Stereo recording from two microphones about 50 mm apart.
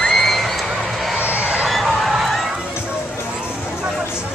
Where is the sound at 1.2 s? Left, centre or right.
Right.